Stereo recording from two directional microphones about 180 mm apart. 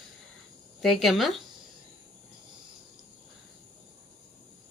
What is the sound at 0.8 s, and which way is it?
Speech, centre (ahead or behind).